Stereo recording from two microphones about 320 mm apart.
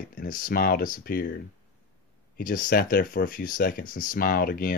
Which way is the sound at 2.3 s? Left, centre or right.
Left.